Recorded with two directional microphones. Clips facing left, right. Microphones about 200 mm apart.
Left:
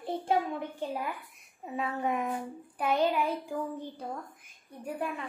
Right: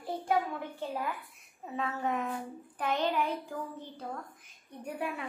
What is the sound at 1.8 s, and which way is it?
Child singing, 10° left (ahead or behind).